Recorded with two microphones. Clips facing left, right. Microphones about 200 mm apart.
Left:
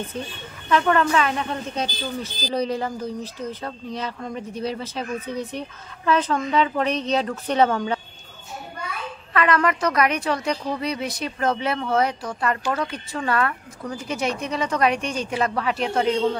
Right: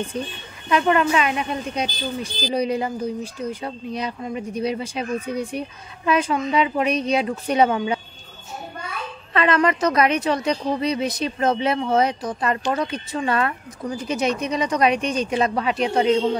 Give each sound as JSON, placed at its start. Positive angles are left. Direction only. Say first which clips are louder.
{"t": 0.7, "sound": "a woman's voice", "louder": "right 1 dB", "side_deg": -15}
{"t": 9.3, "sound": "speech", "louder": "right 2 dB", "side_deg": -25}